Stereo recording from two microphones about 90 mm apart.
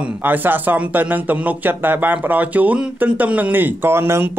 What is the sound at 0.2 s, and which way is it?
A man's voice, 20° right (ahead or behind).